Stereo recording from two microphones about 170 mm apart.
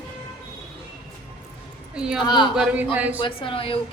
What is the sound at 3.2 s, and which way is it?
Speech, 30° left (ahead or behind).